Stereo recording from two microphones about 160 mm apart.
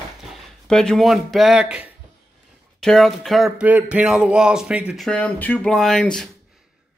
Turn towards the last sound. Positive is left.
turn(degrees=5)  # may be behind; listen again after turning